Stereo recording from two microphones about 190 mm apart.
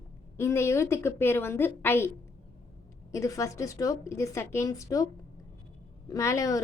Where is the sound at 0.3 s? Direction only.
15° left (ahead or behind).